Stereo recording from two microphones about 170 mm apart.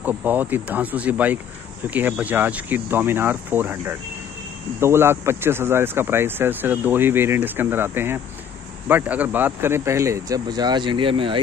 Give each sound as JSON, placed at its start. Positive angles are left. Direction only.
{"t": 0.0, "sound": "speech", "side_deg": -10}